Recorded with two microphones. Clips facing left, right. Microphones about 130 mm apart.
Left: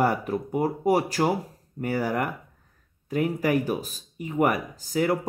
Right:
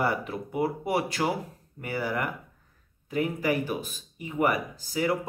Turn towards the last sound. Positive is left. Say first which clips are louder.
# left 3 dB
turn(degrees=45)  # may be behind; listen again after turning